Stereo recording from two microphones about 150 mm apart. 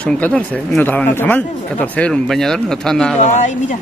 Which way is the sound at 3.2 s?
55° left (ahead or behind).